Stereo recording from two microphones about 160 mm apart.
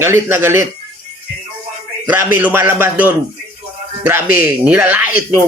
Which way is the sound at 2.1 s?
10° right (ahead or behind).